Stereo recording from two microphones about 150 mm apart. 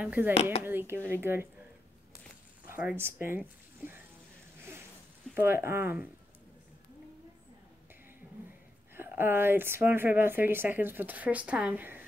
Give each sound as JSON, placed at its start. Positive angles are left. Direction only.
{"t": 0.0, "sound": "a woman's voice", "side_deg": -10}
{"t": 0.3, "sound": "speech", "side_deg": 45}
{"t": 0.7, "sound": "a woman's voice", "side_deg": -15}
{"t": 2.7, "sound": "speech", "side_deg": -10}
{"t": 5.3, "sound": "a woman's voice", "side_deg": -15}
{"t": 8.9, "sound": "a woman's voice", "side_deg": -15}